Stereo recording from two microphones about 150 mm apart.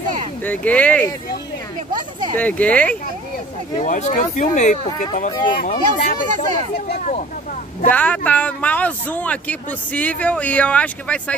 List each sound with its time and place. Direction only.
0.4 s speech: 10° left (ahead or behind)
2.0 s a sound: 30° right (ahead or behind)
2.3 s speech: 10° left (ahead or behind)
3.8 s speech: 55° left (ahead or behind)
5.3 s speech: 30° left (ahead or behind)
5.6 s speech: 70° left (ahead or behind)
6.9 s speech: 50° left (ahead or behind)
7.8 s speech: 10° left (ahead or behind)